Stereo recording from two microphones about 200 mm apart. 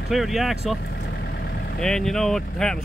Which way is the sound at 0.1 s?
Centre (ahead or behind).